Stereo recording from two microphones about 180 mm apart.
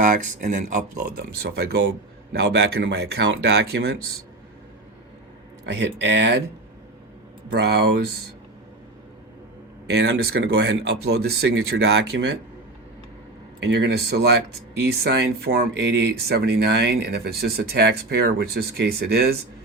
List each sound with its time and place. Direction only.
0.0 s speech: 45° right (ahead or behind)
2.3 s speech: 65° right (ahead or behind)
5.6 s speech: 80° right
7.5 s speech: 65° right (ahead or behind)
9.8 s speech: 65° right (ahead or behind)
13.6 s speech: 70° right (ahead or behind)